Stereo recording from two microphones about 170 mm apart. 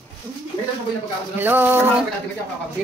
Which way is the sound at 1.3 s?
10° right (ahead or behind).